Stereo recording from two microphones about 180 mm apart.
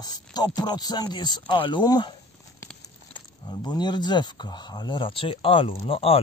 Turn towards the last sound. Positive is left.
turn(degrees=30)  # may be behind; listen again after turning